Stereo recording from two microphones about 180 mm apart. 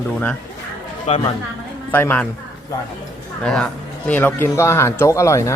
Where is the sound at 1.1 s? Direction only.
35° left (ahead or behind).